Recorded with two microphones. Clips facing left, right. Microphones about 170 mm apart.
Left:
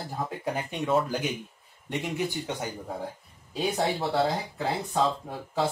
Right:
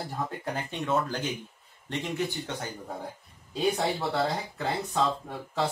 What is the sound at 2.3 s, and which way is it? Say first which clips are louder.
Speech: left 2 dB; 15° left (ahead or behind).